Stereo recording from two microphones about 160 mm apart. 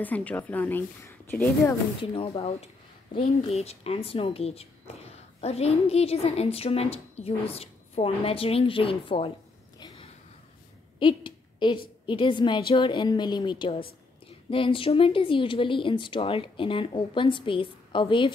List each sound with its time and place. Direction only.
0.0 s a woman's voice: 10° left (ahead or behind)
2.0 s speech: 35° left (ahead or behind)
9.8 s a sound: 25° left (ahead or behind)
12.1 s a woman's voice: 30° left (ahead or behind)